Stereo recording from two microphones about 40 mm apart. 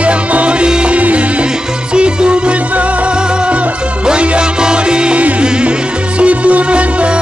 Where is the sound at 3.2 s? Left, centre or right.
Right.